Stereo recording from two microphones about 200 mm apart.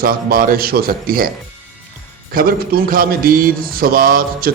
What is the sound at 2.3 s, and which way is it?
A man's voice, 45° right (ahead or behind).